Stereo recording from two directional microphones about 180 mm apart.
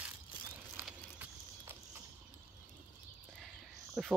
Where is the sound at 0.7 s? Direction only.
10° right (ahead or behind).